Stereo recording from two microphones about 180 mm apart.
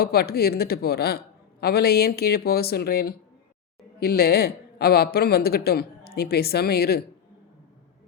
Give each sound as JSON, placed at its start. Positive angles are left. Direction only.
{"t": 0.0, "sound": "a man's voice", "side_deg": 60}